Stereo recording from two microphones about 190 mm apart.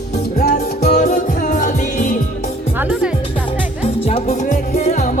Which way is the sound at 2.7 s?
5° right (ahead or behind).